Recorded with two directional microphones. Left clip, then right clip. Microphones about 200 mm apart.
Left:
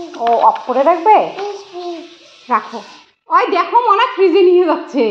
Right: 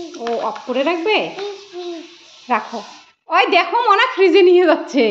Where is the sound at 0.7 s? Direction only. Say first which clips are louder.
Left 3 dB; 55° right (ahead or behind).